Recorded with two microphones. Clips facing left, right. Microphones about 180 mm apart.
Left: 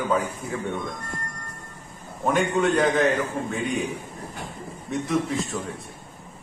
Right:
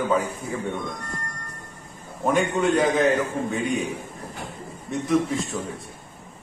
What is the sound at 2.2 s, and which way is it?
A man's voice, centre (ahead or behind).